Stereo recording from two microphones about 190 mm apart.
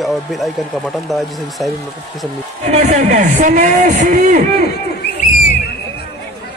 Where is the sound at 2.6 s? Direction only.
40° right (ahead or behind).